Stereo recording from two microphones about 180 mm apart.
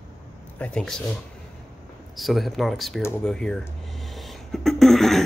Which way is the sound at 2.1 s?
Centre (ahead or behind).